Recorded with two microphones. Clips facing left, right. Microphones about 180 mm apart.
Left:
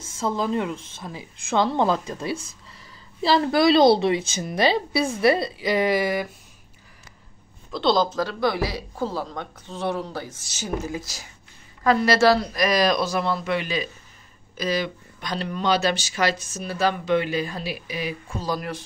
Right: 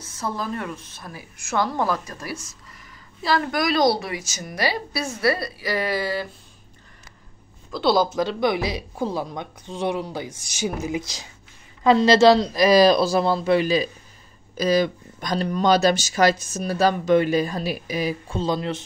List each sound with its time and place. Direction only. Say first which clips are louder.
0.2 s a woman's voice: left 4 dB; 20° left (ahead or behind)
7.7 s a woman's voice: right 1 dB; 5° right (ahead or behind); by 18.1 s 40° right (ahead or behind)
18.3 s a woman's voice: right 3 dB; 25° right (ahead or behind)